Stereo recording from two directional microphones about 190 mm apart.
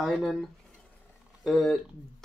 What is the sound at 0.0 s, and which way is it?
Speech, centre (ahead or behind).